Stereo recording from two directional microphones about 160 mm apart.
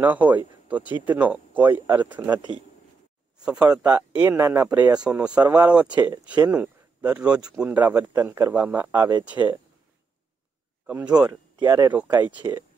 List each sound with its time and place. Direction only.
0.0 s speech: 10° right (ahead or behind)
2.3 s speech: 30° right (ahead or behind)
3.4 s speech: 5° right (ahead or behind)
5.9 s speech: 25° right (ahead or behind)
6.2 s speech: 10° right (ahead or behind)
10.9 s speech: 10° right (ahead or behind)
11.2 s speech: 25° right (ahead or behind)
11.9 s speech: 10° right (ahead or behind)